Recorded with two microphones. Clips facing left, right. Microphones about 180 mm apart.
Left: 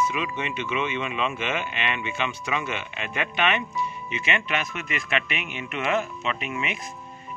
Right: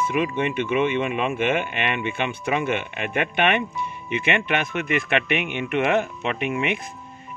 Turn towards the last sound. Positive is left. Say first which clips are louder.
# right 6 dB
turn(degrees=-55)  # may be behind; listen again after turning